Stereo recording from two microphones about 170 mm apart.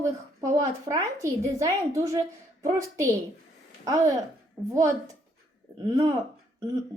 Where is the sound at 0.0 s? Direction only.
20° right (ahead or behind).